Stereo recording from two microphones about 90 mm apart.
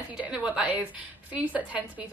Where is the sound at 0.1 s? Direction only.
15° right (ahead or behind).